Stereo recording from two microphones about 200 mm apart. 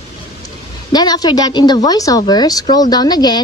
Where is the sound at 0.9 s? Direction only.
20° left (ahead or behind).